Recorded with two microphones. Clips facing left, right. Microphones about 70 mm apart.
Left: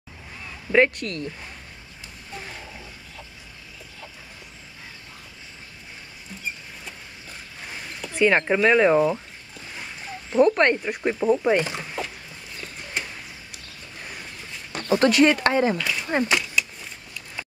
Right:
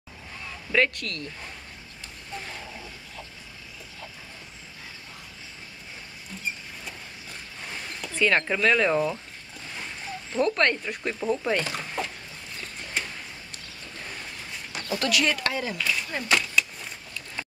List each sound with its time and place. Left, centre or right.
0.7 s speech: left
8.0 s speech: centre
10.3 s speech: centre
14.9 s speech: left
15.8 s a sound: centre
16.3 s vehicle: centre